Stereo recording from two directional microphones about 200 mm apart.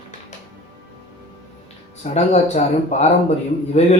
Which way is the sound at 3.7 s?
35° left (ahead or behind).